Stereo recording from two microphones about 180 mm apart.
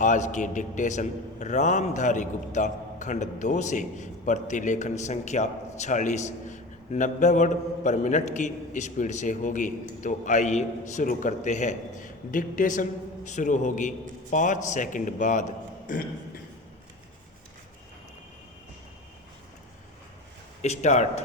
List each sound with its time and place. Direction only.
0.0 s a man's voice: 45° left (ahead or behind)
20.6 s speech: 40° left (ahead or behind)